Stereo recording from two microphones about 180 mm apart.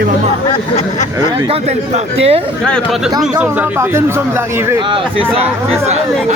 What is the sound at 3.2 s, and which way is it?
Speech, 10° right (ahead or behind).